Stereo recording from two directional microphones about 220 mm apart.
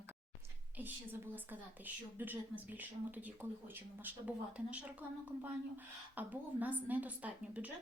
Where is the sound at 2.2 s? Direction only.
10° right (ahead or behind).